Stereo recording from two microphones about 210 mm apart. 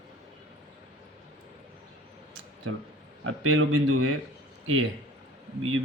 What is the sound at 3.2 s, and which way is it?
Speech, 80° right.